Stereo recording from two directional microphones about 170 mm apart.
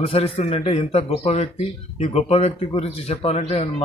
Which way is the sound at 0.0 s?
35° left (ahead or behind).